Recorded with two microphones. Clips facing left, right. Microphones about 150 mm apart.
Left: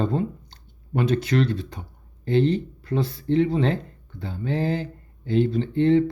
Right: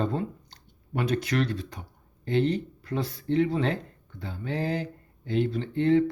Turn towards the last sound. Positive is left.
turn(degrees=30)  # may be behind; listen again after turning